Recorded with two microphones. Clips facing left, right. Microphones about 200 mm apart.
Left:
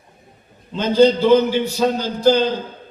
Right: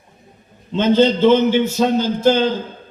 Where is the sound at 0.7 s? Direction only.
25° right (ahead or behind).